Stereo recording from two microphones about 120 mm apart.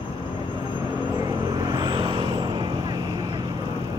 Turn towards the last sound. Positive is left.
turn(degrees=-35)  # may be behind; listen again after turning